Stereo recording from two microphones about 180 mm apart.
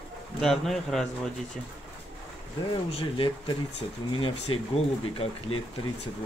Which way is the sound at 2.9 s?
30° left (ahead or behind).